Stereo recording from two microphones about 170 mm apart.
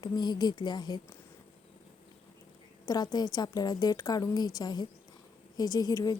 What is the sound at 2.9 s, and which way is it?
A woman's voice, 25° left (ahead or behind).